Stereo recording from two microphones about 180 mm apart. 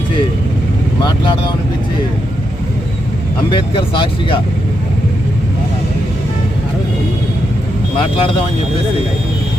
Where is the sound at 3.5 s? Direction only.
25° left (ahead or behind).